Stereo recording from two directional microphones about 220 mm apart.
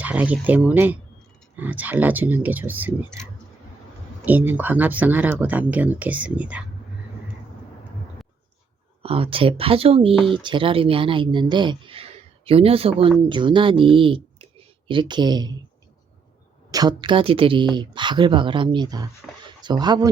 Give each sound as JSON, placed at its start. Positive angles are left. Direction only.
{"t": 0.0, "sound": "speech", "side_deg": -5}
{"t": 4.3, "sound": "speech", "side_deg": -10}
{"t": 9.0, "sound": "speech", "side_deg": -25}
{"t": 10.2, "sound": "speech", "side_deg": 0}
{"t": 10.4, "sound": "speech", "side_deg": -25}
{"t": 16.7, "sound": "speech", "side_deg": -20}
{"t": 19.2, "sound": "a sound", "side_deg": 5}
{"t": 19.6, "sound": "speech", "side_deg": -20}